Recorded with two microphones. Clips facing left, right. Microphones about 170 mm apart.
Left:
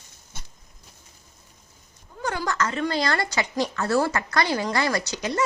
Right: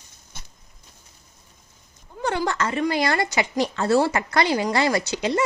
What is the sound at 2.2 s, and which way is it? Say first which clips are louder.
A woman's voice: right 3 dB; 25° right (ahead or behind).